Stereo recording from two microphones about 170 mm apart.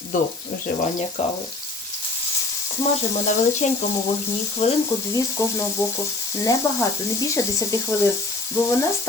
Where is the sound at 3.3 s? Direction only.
45° left (ahead or behind).